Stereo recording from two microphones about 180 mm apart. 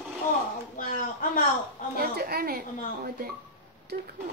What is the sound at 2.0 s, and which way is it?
A woman's voice, 55° right (ahead or behind).